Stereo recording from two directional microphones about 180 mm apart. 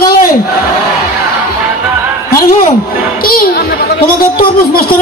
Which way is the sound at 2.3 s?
50° left (ahead or behind).